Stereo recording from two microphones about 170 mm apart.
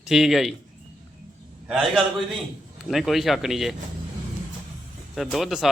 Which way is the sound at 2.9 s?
Centre (ahead or behind).